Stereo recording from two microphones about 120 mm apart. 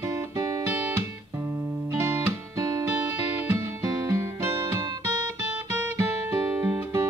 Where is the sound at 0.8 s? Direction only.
20° right (ahead or behind).